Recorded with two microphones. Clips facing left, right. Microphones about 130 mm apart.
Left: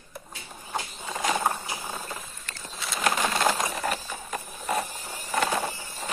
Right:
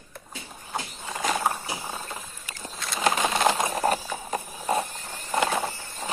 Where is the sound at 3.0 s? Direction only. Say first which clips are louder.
Right 2 dB; 20° right (ahead or behind).